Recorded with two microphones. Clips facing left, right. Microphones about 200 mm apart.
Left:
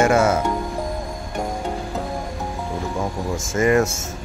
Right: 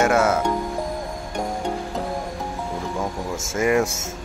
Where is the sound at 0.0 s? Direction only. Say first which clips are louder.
Left 2 dB; centre (ahead or behind).